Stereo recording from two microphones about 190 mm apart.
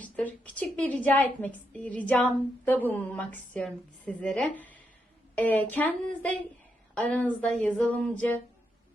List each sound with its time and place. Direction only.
0.0 s a woman's voice: 10° left (ahead or behind)